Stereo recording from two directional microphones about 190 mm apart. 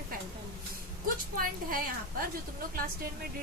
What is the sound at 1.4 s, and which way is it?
Speech, 50° right (ahead or behind).